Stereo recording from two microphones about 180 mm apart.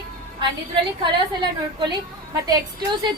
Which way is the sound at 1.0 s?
25° right (ahead or behind).